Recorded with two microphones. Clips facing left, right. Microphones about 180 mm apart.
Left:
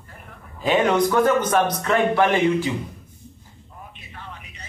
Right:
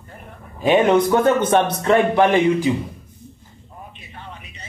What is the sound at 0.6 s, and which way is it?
A man's voice, 25° right (ahead or behind).